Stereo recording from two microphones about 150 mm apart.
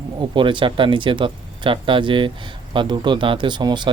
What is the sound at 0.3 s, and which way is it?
Speech, 35° right (ahead or behind).